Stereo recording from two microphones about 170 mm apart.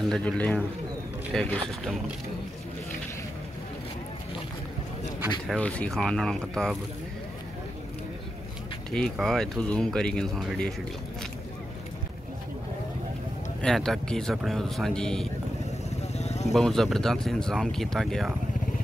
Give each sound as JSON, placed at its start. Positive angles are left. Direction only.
{"t": 0.1, "sound": "a man's voice", "side_deg": 5}
{"t": 5.5, "sound": "speech", "side_deg": 10}
{"t": 8.9, "sound": "speech", "side_deg": 5}
{"t": 13.6, "sound": "speech", "side_deg": 5}
{"t": 16.2, "sound": "vehicle", "side_deg": 40}
{"t": 16.5, "sound": "speech", "side_deg": 0}